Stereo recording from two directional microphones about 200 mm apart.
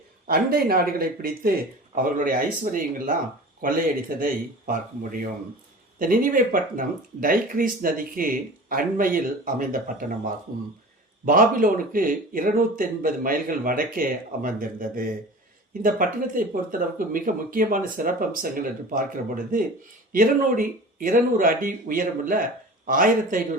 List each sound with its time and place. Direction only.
0.3 s speech: 45° right (ahead or behind)